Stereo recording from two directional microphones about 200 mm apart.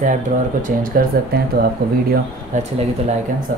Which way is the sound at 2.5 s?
35° right (ahead or behind).